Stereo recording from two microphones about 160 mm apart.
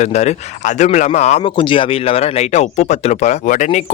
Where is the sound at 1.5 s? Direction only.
30° left (ahead or behind).